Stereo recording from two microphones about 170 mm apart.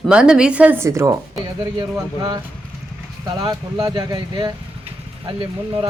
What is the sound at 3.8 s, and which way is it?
Speech, 20° right (ahead or behind).